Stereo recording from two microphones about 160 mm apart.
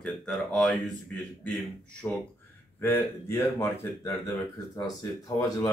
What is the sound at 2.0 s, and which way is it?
Speech, 10° left (ahead or behind).